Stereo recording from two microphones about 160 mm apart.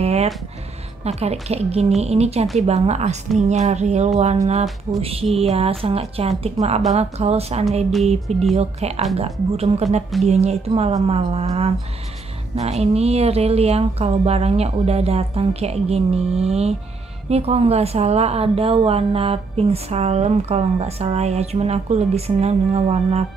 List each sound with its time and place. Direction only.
0.0 s music: 40° right (ahead or behind)
1.0 s a woman's voice: 40° right (ahead or behind)